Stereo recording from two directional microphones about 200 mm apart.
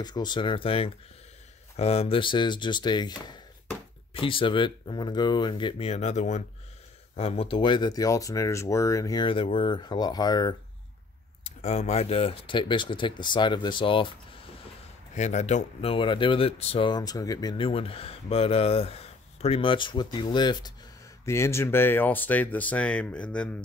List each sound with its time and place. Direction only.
0.0 s speech: 20° left (ahead or behind)
11.4 s speech: 35° left (ahead or behind); by 23.5 s 5° left (ahead or behind)